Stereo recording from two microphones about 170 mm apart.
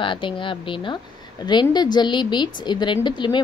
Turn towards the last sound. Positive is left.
turn(degrees=25)  # may be behind; listen again after turning